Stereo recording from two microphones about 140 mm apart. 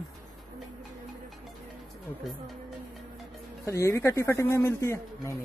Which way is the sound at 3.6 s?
20° left (ahead or behind).